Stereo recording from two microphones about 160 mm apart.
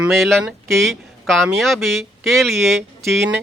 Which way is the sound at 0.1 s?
Centre (ahead or behind).